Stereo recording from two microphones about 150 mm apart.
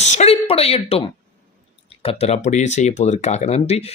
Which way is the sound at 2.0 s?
40° left (ahead or behind).